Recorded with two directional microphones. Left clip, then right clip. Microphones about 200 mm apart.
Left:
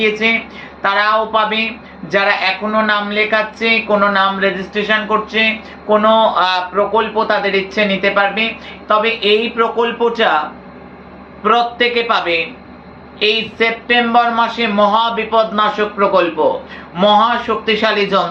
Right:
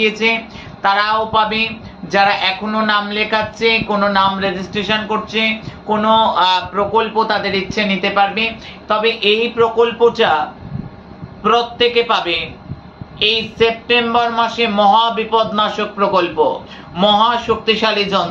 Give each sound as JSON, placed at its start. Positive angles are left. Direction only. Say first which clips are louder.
{"t": 0.0, "sound": "speech", "louder": "left 1 dB", "side_deg": -20}
{"t": 11.4, "sound": "speech", "louder": "left 1 dB", "side_deg": -20}